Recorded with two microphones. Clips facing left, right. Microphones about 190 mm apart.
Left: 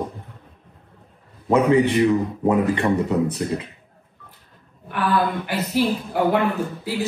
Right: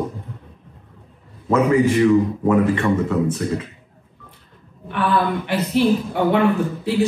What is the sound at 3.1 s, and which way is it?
Speech, 20° left (ahead or behind).